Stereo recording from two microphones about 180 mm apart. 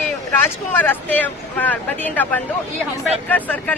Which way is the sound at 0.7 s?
10° left (ahead or behind).